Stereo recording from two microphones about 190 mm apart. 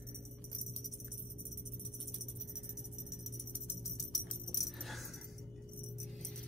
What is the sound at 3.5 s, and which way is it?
Music, 15° left (ahead or behind).